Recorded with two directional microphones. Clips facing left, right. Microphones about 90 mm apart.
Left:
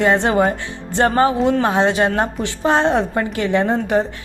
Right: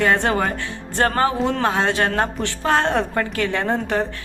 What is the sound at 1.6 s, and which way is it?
A woman's voice, 20° left (ahead or behind).